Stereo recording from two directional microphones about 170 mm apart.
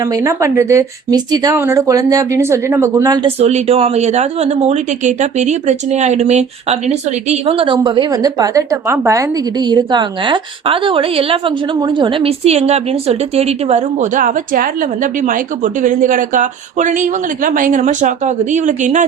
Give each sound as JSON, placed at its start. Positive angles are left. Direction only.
{"t": 0.0, "sound": "speech", "side_deg": -20}
{"t": 3.2, "sound": "speech", "side_deg": -40}